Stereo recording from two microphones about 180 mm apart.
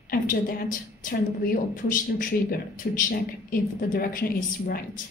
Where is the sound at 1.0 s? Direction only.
50° left (ahead or behind).